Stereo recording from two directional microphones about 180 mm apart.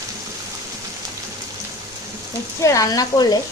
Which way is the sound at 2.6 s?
20° left (ahead or behind).